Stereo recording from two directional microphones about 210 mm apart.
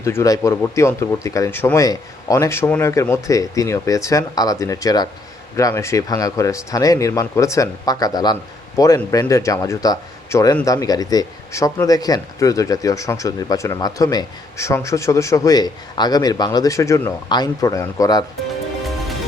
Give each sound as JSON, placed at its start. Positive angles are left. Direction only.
{"t": 0.0, "sound": "speech", "side_deg": 15}